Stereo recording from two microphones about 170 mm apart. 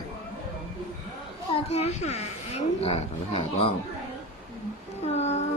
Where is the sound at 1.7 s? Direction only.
40° left (ahead or behind).